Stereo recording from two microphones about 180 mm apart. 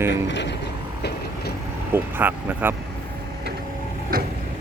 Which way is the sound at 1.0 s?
65° left (ahead or behind).